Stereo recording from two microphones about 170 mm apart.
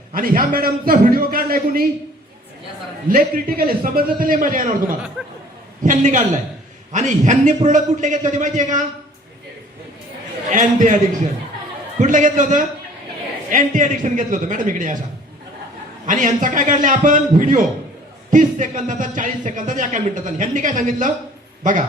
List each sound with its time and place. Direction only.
0.1 s a man's voice: 55° right (ahead or behind)
3.1 s a man's voice: 55° right (ahead or behind)
5.8 s a man's voice: 50° right (ahead or behind)
10.5 s a man's voice: 50° right (ahead or behind)
16.0 s a man's voice: 50° right (ahead or behind)